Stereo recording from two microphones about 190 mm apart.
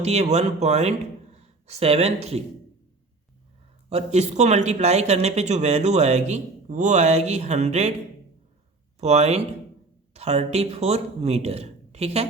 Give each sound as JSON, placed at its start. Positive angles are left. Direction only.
{"t": 0.0, "sound": "speech", "side_deg": -35}
{"t": 3.8, "sound": "speech", "side_deg": -35}
{"t": 9.0, "sound": "speech", "side_deg": -35}